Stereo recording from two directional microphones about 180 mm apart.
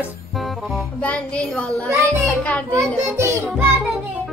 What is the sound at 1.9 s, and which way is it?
Music, 15° right (ahead or behind).